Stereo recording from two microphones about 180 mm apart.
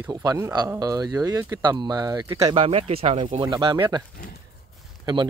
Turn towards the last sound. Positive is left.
turn(degrees=-25)  # may be behind; listen again after turning